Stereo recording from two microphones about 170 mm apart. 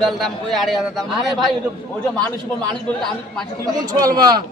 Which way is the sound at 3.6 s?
25° right (ahead or behind).